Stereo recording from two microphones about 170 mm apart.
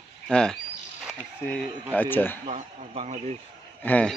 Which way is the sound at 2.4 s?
40° right (ahead or behind).